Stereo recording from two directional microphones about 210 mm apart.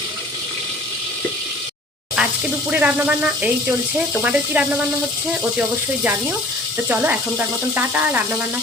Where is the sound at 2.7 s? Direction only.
5° right (ahead or behind).